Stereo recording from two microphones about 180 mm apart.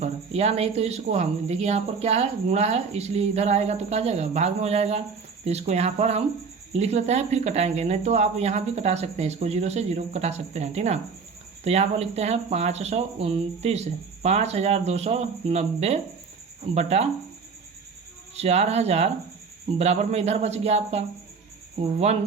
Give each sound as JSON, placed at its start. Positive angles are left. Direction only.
{"t": 0.0, "sound": "speech", "side_deg": -35}
{"t": 18.3, "sound": "speech", "side_deg": -35}